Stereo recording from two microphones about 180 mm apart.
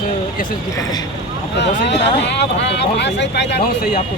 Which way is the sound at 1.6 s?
75° left (ahead or behind).